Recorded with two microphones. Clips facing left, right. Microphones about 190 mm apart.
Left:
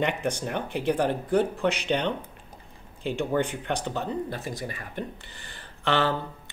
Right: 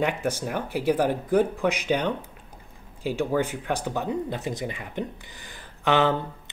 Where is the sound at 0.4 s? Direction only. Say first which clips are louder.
Right 1 dB; 5° right (ahead or behind).